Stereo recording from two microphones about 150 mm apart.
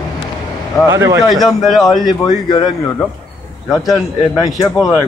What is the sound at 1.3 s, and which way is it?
Speech, centre (ahead or behind).